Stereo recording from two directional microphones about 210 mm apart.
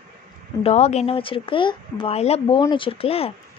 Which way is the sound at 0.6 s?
30° left (ahead or behind).